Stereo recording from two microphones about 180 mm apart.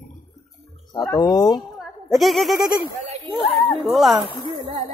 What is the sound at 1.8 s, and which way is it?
Speech, centre (ahead or behind).